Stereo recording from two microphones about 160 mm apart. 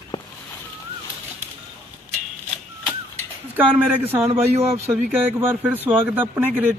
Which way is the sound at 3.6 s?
10° right (ahead or behind).